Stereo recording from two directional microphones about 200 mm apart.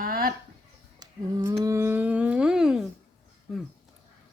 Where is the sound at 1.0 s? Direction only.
15° right (ahead or behind).